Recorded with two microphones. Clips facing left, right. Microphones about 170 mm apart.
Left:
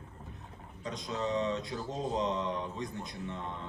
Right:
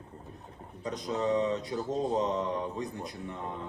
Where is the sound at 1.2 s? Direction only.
10° right (ahead or behind).